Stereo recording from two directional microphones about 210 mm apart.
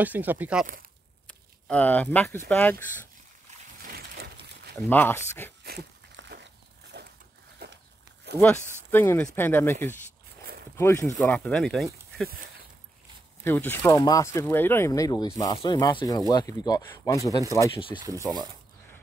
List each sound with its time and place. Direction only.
0.0 s speech: 10° right (ahead or behind)
1.2 s speech: 5° left (ahead or behind)
3.8 s a sound: 45° right (ahead or behind)
4.7 s speech: 10° left (ahead or behind)
5.6 s a sound: 50° right (ahead or behind)
8.4 s speech: 10° left (ahead or behind)
13.4 s speech: 10° left (ahead or behind)
18.0 s speech: 15° right (ahead or behind)